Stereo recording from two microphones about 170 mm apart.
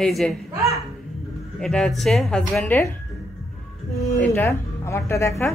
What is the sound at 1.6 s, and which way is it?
Speech, 5° left (ahead or behind).